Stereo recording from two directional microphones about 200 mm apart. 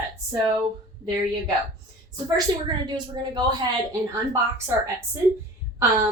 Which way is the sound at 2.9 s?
20° right (ahead or behind).